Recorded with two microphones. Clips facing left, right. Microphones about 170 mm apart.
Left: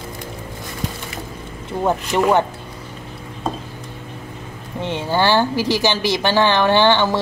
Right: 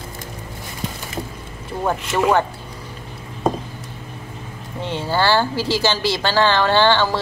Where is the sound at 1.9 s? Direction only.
20° left (ahead or behind).